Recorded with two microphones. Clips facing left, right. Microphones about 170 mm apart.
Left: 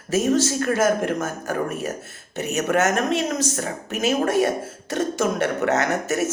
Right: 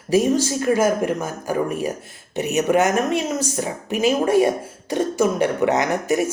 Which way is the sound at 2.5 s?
15° right (ahead or behind).